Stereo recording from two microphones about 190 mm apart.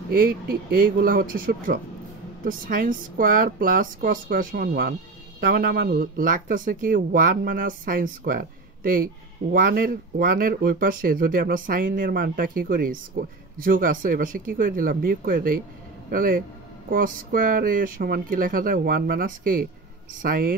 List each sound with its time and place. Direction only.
0.1 s speech: 50° right (ahead or behind)